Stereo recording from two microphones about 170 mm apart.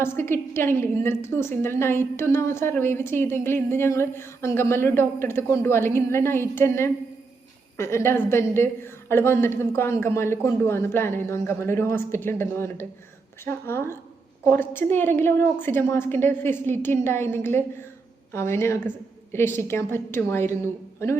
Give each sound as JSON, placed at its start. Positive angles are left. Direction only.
{"t": 0.0, "sound": "a woman's voice", "side_deg": 15}